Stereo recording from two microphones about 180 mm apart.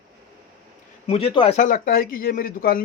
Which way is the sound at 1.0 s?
30° left (ahead or behind).